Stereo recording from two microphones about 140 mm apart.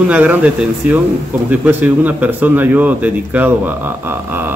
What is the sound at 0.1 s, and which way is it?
Speech, 10° right (ahead or behind).